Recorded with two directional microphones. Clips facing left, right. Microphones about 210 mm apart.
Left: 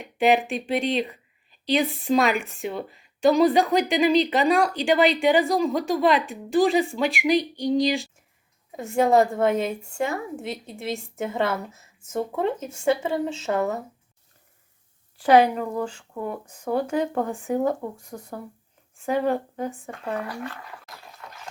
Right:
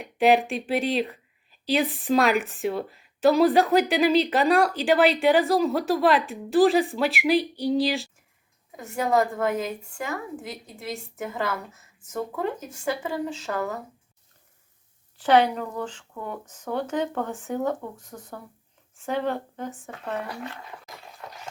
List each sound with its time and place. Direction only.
0.0 s a woman's voice: centre (ahead or behind)
8.7 s a woman's voice: 25° left (ahead or behind)
15.2 s speech: 10° left (ahead or behind)
20.2 s speech: 20° right (ahead or behind)